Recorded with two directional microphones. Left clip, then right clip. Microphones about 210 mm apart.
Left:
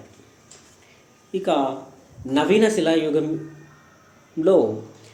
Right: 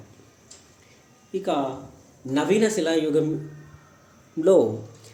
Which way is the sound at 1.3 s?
Centre (ahead or behind).